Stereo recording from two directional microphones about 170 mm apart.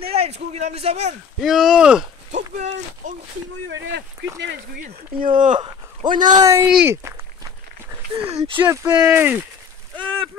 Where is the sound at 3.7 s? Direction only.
90° right.